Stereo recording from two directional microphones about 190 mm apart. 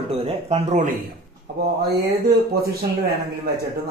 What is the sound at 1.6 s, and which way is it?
Speech, 55° right (ahead or behind).